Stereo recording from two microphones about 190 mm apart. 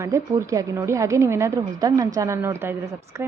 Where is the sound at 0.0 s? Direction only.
15° right (ahead or behind).